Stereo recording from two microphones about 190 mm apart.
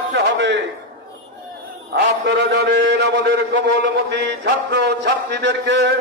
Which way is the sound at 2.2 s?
65° right (ahead or behind).